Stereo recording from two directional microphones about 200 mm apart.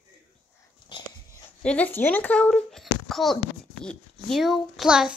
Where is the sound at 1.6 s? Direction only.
5° left (ahead or behind).